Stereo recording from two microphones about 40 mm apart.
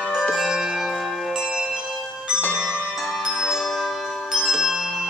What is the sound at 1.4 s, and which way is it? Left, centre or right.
Bell, centre.